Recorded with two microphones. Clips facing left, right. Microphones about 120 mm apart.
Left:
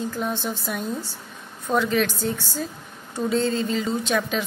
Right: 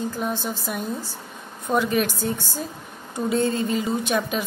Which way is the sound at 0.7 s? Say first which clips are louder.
Even; 5° right (ahead or behind).